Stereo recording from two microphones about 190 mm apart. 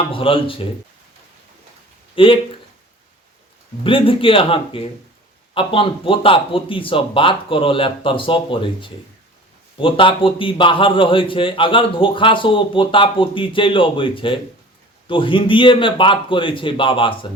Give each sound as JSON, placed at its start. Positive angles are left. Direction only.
{"t": 0.1, "sound": "a man's voice", "side_deg": 30}
{"t": 2.1, "sound": "speech", "side_deg": 25}
{"t": 3.8, "sound": "a man's voice", "side_deg": 30}